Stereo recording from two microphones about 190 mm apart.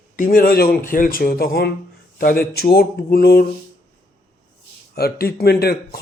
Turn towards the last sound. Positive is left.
turn(degrees=55)  # may be behind; listen again after turning